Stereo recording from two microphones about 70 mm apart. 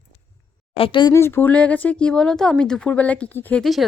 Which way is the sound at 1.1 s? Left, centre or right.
Left.